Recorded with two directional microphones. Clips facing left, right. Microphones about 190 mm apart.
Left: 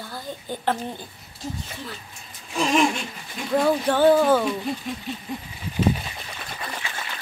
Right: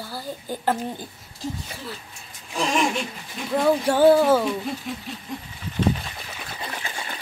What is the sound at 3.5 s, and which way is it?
Speech, centre (ahead or behind).